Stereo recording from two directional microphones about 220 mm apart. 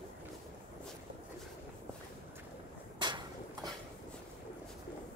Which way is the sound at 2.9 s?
20° right (ahead or behind).